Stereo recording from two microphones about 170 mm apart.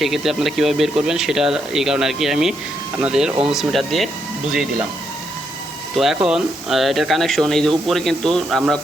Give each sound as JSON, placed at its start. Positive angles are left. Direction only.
{"t": 0.0, "sound": "speech", "side_deg": 0}
{"t": 6.1, "sound": "speech", "side_deg": -5}